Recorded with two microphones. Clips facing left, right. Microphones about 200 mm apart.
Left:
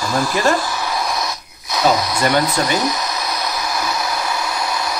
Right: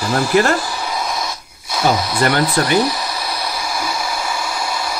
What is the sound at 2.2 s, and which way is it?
Speech, 55° right (ahead or behind).